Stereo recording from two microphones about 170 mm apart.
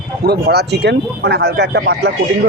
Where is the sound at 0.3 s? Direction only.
70° right (ahead or behind).